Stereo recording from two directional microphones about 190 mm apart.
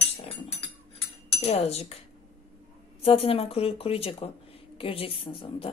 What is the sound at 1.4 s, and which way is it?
Speech, 35° left (ahead or behind).